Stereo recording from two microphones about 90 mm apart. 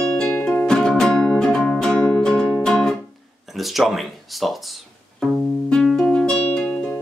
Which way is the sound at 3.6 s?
Centre (ahead or behind).